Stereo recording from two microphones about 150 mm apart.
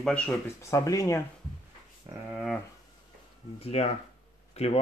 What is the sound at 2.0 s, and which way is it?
Speech, 35° right (ahead or behind).